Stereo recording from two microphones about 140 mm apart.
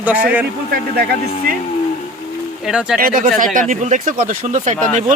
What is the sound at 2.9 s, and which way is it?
Speech, 80° right.